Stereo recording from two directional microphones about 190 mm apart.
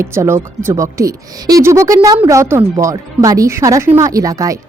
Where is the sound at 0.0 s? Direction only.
15° right (ahead or behind).